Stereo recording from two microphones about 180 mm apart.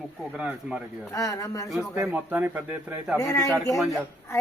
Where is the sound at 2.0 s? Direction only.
10° right (ahead or behind).